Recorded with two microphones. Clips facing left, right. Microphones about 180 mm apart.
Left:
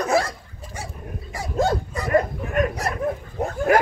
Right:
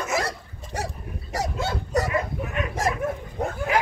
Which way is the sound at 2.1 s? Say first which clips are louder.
Left 6 dB; 50° left (ahead or behind).